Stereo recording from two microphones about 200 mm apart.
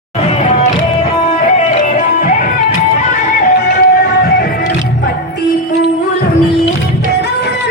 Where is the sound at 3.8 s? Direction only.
50° left (ahead or behind).